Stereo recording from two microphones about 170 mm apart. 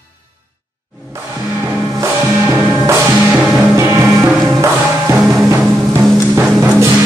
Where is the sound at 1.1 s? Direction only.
15° right (ahead or behind).